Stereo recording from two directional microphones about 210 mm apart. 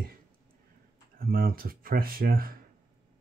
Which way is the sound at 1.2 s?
45° right (ahead or behind).